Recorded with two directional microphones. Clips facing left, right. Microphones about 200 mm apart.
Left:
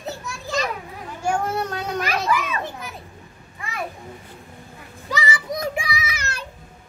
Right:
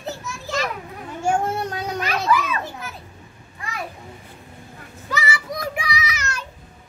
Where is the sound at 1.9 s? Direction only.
10° left (ahead or behind).